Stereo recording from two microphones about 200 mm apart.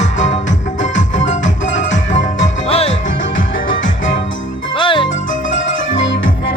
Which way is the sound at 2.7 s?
30° left (ahead or behind).